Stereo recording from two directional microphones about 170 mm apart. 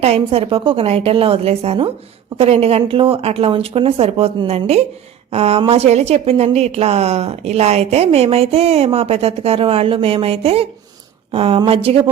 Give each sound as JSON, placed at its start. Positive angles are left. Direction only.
{"t": 0.0, "sound": "a woman's voice", "side_deg": -35}